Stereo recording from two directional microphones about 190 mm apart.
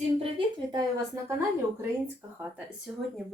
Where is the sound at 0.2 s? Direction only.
25° right (ahead or behind).